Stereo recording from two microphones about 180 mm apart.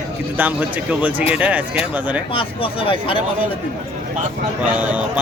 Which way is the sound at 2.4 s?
30° left (ahead or behind).